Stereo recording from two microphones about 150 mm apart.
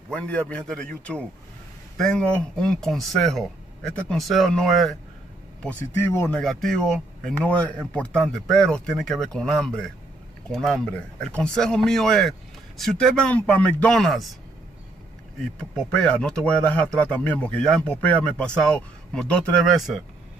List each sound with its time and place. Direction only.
0.1 s speech: 10° left (ahead or behind)
2.0 s speech: 5° left (ahead or behind)
15.4 s speech: 5° left (ahead or behind)